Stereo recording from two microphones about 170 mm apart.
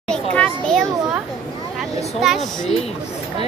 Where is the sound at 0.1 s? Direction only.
5° left (ahead or behind).